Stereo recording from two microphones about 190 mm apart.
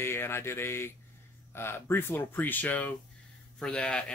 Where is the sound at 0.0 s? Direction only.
10° left (ahead or behind).